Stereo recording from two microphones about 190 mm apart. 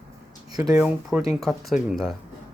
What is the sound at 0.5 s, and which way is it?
Speech, 20° right (ahead or behind).